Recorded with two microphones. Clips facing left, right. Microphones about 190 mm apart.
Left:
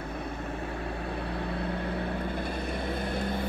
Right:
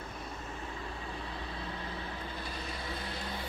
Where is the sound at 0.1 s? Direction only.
60° left (ahead or behind).